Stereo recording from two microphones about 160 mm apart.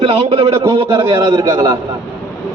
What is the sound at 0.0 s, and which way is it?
A man's voice, 35° right (ahead or behind).